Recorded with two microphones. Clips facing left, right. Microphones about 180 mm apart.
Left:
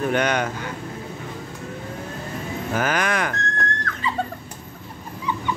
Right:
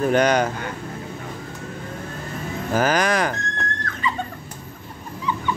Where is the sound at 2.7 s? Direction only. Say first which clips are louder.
Right 4 dB; 35° right (ahead or behind).